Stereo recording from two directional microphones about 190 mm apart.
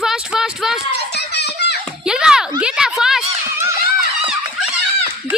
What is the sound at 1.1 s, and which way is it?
Children playing, 60° left (ahead or behind).